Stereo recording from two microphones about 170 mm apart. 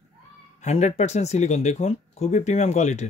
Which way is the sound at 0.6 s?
40° left (ahead or behind).